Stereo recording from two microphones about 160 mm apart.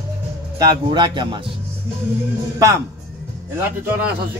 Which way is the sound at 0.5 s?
25° right (ahead or behind).